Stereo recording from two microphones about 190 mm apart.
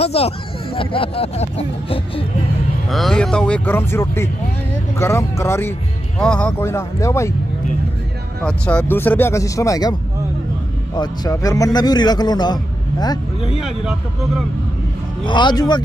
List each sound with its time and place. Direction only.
0.0 s a man's voice: 30° left (ahead or behind)
2.9 s speech: centre (ahead or behind)
8.5 s speech: 5° left (ahead or behind)
11.0 s a man's voice: 20° left (ahead or behind)
13.6 s speech: centre (ahead or behind)
15.2 s a man's voice: 25° left (ahead or behind)